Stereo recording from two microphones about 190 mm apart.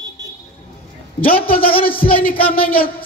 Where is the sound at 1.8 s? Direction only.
50° left (ahead or behind).